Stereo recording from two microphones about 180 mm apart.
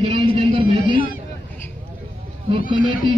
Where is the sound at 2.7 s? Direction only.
25° right (ahead or behind).